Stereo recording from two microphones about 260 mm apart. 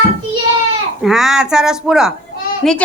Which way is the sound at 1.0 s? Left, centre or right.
Centre.